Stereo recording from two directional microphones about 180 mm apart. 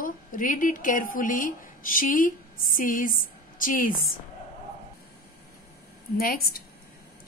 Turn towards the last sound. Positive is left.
turn(degrees=55)  # may be behind; listen again after turning